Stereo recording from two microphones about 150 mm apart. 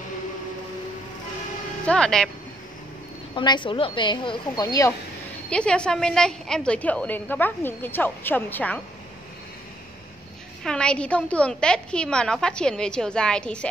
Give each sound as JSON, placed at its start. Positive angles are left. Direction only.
{"t": 1.9, "sound": "a woman's voice", "side_deg": 5}
{"t": 3.3, "sound": "a woman's voice", "side_deg": 30}
{"t": 5.5, "sound": "a woman's voice", "side_deg": 5}
{"t": 10.6, "sound": "a woman's voice", "side_deg": 5}